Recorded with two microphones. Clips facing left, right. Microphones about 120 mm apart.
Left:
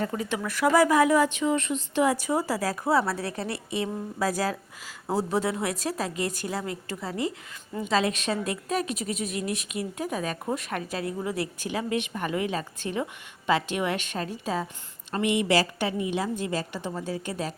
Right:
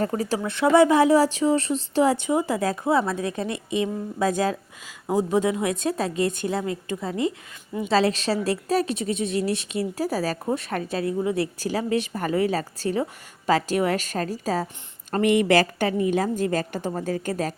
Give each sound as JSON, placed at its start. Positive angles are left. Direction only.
{"t": 0.0, "sound": "speech", "side_deg": -35}
{"t": 7.9, "sound": "a woman's voice", "side_deg": -30}
{"t": 15.1, "sound": "a woman's voice", "side_deg": -50}